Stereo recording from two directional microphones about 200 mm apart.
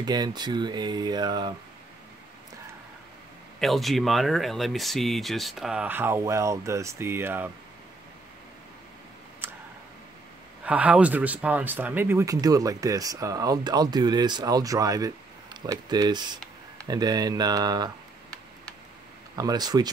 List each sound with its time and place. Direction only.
0.0 s speech: 20° right (ahead or behind)
3.5 s speech: centre (ahead or behind)
9.4 s clicking: 10° right (ahead or behind)
10.6 s speech: 5° right (ahead or behind)
19.3 s speech: 20° right (ahead or behind)